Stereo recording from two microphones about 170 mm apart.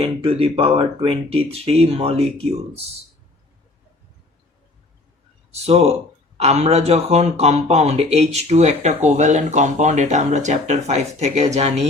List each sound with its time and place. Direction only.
0.0 s speech: 35° right (ahead or behind)
5.6 s speech: 35° right (ahead or behind)